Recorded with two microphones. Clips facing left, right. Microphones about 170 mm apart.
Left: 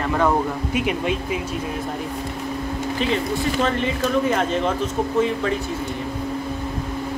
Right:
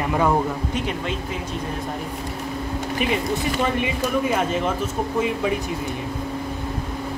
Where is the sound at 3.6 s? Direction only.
10° right (ahead or behind).